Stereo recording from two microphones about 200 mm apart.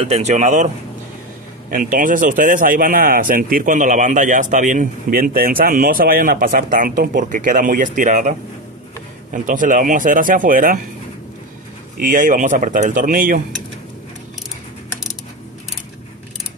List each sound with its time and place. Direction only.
0.0 s a man's voice: 35° right (ahead or behind)
1.7 s a man's voice: 45° right (ahead or behind)
12.0 s a man's voice: 40° right (ahead or behind)